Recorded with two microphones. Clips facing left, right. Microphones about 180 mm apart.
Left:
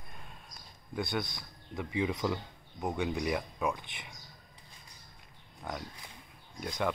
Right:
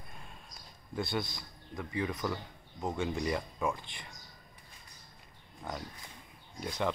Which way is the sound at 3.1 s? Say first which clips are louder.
Left 1 dB; 5° left (ahead or behind).